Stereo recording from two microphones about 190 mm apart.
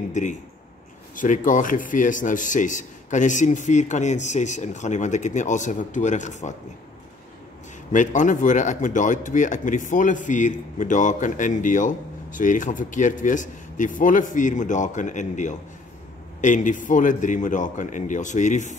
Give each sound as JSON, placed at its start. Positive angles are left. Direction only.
{"t": 0.1, "sound": "speech", "side_deg": 40}
{"t": 7.9, "sound": "speech", "side_deg": 40}